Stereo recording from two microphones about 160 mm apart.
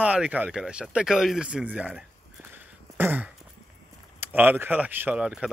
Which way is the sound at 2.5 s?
10° right (ahead or behind).